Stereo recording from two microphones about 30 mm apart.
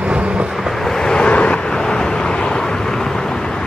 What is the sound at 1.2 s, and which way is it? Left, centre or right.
Vehicle, left.